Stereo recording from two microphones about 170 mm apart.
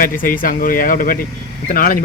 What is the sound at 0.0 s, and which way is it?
Speech, 55° left (ahead or behind).